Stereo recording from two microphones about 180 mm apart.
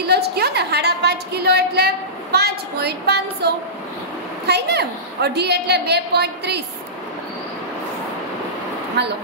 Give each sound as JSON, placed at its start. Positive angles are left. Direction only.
{"t": 0.0, "sound": "a woman's voice", "side_deg": -65}
{"t": 9.0, "sound": "a woman's voice", "side_deg": -70}